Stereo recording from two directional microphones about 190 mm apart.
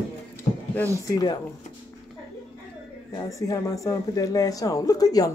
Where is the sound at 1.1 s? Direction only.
20° left (ahead or behind).